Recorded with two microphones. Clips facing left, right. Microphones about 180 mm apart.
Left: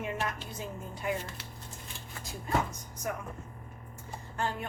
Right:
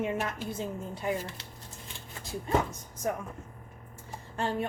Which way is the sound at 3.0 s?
30° right (ahead or behind).